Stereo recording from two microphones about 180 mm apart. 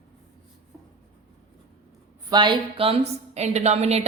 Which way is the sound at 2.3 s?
25° right (ahead or behind).